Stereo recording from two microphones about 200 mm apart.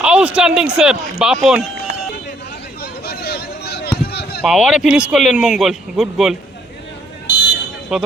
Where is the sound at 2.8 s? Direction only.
50° left (ahead or behind).